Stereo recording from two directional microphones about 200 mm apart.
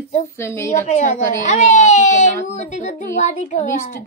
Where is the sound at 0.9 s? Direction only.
35° left (ahead or behind).